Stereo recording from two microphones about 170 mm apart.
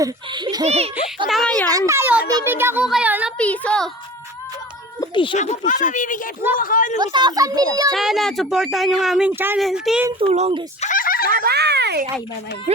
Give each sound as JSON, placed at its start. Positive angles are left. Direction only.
{"t": 0.0, "sound": "speech", "side_deg": -25}
{"t": 0.6, "sound": "speech", "side_deg": -40}
{"t": 1.3, "sound": "a woman's voice", "side_deg": 5}
{"t": 1.9, "sound": "a child's voice", "side_deg": -10}
{"t": 3.3, "sound": "a woman's voice", "side_deg": 10}
{"t": 4.9, "sound": "speech", "side_deg": 30}
{"t": 5.4, "sound": "speech", "side_deg": 45}
{"t": 7.0, "sound": "speech", "side_deg": -25}
{"t": 7.9, "sound": "speech", "side_deg": 0}
{"t": 9.6, "sound": "speech", "side_deg": 0}
{"t": 10.2, "sound": "speech", "side_deg": -35}
{"t": 10.8, "sound": "a sound", "side_deg": 50}
{"t": 11.3, "sound": "a child's voice", "side_deg": -60}
{"t": 12.7, "sound": "speech", "side_deg": -40}